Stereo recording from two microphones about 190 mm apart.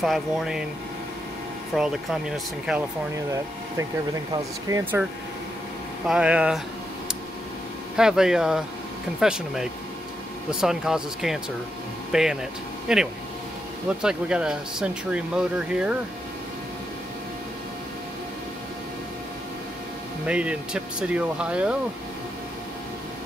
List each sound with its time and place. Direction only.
0.0 s speech: centre (ahead or behind)
1.8 s speech: 5° right (ahead or behind)
4.6 s speech: 15° right (ahead or behind)
6.0 s speech: 5° right (ahead or behind)
7.9 s speech: 5° right (ahead or behind)
20.2 s speech: 5° right (ahead or behind)